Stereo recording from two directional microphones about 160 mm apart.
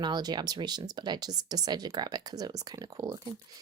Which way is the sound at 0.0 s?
25° right (ahead or behind).